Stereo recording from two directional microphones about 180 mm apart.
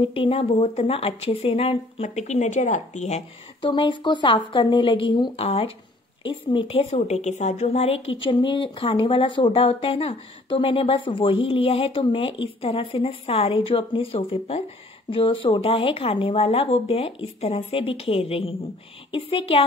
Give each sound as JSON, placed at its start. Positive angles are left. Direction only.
{"t": 0.0, "sound": "speech", "side_deg": 30}